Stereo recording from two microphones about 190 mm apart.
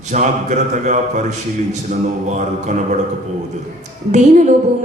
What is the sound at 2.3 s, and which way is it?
Speech, 40° right (ahead or behind).